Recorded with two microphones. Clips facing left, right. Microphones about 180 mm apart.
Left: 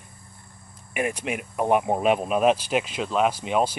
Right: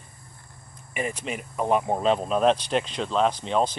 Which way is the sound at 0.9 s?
10° left (ahead or behind).